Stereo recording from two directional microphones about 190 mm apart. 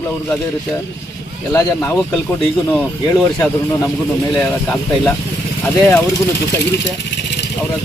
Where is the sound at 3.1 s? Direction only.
20° left (ahead or behind).